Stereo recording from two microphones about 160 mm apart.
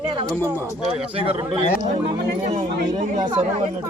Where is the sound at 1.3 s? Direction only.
35° right (ahead or behind).